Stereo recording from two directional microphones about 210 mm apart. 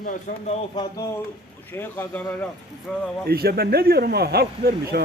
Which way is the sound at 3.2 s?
45° right (ahead or behind).